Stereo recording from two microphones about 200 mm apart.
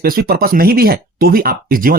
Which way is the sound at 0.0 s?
50° right (ahead or behind).